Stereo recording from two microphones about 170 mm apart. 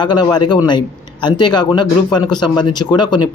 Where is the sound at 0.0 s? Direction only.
25° left (ahead or behind).